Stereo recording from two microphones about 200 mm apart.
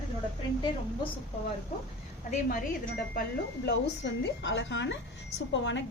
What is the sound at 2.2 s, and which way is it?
Speech, 40° left (ahead or behind).